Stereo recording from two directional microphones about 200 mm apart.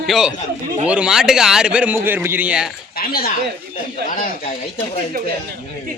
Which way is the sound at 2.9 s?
50° left (ahead or behind).